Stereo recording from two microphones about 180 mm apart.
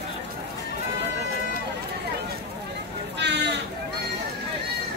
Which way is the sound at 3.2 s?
70° right (ahead or behind).